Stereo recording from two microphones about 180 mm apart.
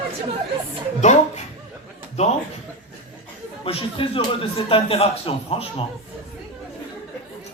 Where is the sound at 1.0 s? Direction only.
40° left (ahead or behind).